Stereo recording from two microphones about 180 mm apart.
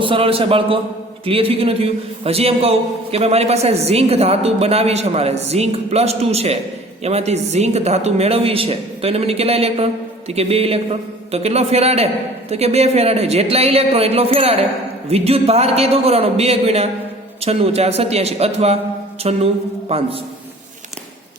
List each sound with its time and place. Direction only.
0.0 s a man's voice: 30° right (ahead or behind)